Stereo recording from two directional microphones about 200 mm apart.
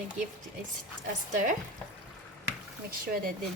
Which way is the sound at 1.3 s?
40° right (ahead or behind).